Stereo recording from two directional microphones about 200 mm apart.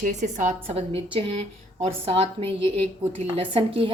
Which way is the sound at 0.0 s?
35° right (ahead or behind).